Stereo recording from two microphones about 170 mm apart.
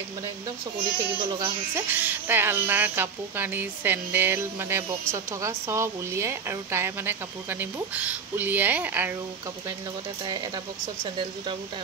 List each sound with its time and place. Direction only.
0.7 s speech: 30° right (ahead or behind)
1.8 s speech: 10° right (ahead or behind)